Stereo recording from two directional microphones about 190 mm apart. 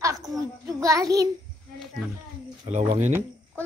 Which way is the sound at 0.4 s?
20° right (ahead or behind).